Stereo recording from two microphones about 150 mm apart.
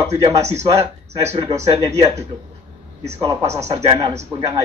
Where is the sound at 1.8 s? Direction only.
20° right (ahead or behind).